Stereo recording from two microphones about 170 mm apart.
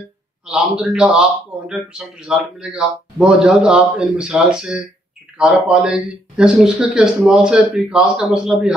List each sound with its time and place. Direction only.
0.5 s speech: 5° right (ahead or behind)